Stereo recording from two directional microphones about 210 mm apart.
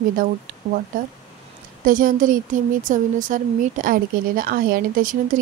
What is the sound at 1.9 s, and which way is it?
Speech, 40° right (ahead or behind).